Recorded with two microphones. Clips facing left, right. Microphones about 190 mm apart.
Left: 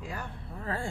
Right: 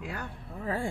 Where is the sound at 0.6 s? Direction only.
15° right (ahead or behind).